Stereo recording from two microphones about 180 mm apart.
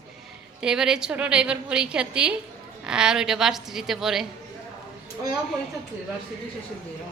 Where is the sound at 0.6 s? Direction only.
5° right (ahead or behind).